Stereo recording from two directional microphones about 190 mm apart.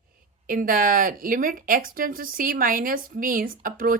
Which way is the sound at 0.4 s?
50° right (ahead or behind).